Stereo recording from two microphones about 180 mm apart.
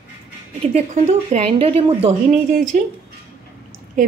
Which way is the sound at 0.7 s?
40° right (ahead or behind).